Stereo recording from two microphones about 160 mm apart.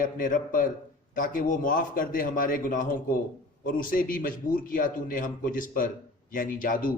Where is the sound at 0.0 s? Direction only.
60° left (ahead or behind).